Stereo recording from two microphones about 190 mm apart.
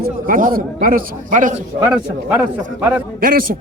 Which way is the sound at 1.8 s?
10° right (ahead or behind).